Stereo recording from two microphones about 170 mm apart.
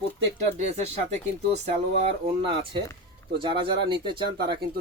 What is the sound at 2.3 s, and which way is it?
Speech, 30° right (ahead or behind).